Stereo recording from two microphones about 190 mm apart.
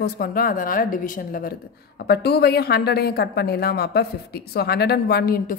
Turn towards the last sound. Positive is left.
turn(degrees=50)  # may be behind; listen again after turning